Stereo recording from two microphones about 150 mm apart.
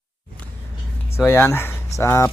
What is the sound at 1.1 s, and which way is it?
Speech, 15° left (ahead or behind).